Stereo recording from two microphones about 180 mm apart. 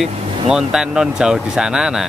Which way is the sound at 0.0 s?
5° right (ahead or behind).